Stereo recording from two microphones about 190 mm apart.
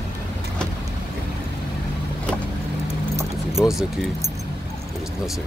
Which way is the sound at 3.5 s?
Centre (ahead or behind).